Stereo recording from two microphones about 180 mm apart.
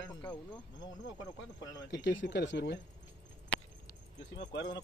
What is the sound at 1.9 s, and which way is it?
Speech, 80° left.